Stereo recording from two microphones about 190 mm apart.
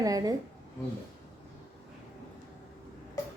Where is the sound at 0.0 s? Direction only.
20° right (ahead or behind).